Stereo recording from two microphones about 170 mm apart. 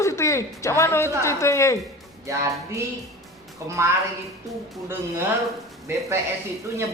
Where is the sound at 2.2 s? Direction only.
15° right (ahead or behind).